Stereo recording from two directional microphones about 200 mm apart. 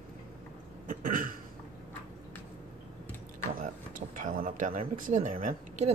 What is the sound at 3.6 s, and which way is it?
Speech, 40° right (ahead or behind).